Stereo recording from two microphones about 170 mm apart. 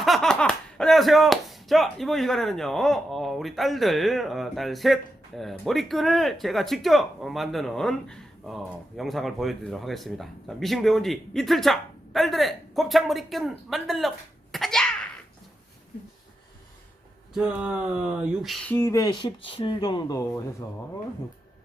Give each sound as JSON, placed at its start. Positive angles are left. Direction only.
{"t": 0.0, "sound": "speech", "side_deg": 0}
{"t": 14.5, "sound": "a sound", "side_deg": 0}
{"t": 17.3, "sound": "speech", "side_deg": -5}
{"t": 18.7, "sound": "speech", "side_deg": 15}